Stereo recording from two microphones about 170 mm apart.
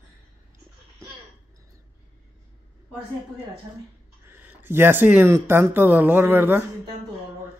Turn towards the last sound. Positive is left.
turn(degrees=-10)  # may be behind; listen again after turning